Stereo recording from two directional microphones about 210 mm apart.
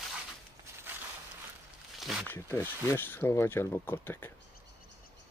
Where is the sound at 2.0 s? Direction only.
Centre (ahead or behind).